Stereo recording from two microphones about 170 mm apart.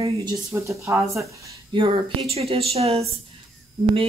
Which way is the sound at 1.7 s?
35° right (ahead or behind).